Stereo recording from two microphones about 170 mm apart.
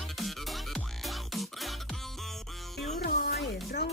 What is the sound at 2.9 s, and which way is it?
Music, 60° left (ahead or behind).